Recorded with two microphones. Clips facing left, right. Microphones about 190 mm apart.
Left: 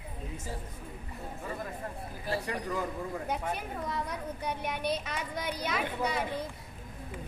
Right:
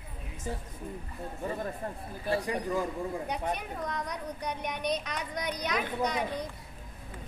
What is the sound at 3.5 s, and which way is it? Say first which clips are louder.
Speech: even; 5° left (ahead or behind).